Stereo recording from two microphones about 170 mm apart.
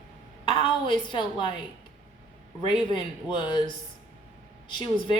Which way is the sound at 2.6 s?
30° left (ahead or behind).